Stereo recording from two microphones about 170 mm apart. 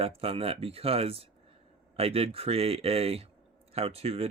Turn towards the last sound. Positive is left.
turn(degrees=-35)  # may be behind; listen again after turning